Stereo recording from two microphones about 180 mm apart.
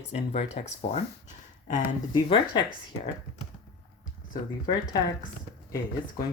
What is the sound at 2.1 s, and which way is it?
Speech, 25° left (ahead or behind).